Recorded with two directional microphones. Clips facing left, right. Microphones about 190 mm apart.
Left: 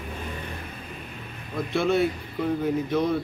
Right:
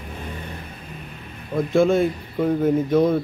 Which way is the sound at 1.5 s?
50° right (ahead or behind).